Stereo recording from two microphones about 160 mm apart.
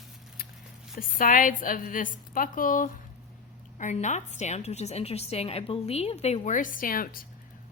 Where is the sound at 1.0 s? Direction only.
60° left (ahead or behind).